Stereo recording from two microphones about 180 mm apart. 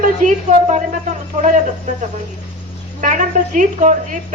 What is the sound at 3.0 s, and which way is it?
A woman's voice, 45° right (ahead or behind).